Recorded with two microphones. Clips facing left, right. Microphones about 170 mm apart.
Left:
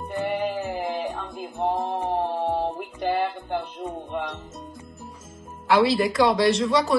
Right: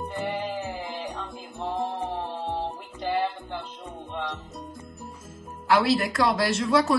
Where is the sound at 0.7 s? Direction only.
60° left (ahead or behind).